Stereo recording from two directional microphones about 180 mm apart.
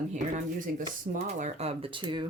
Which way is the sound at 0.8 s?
45° right (ahead or behind).